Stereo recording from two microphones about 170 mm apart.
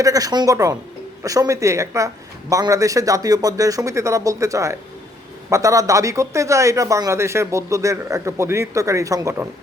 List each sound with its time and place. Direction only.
0.0 s speech: 20° right (ahead or behind)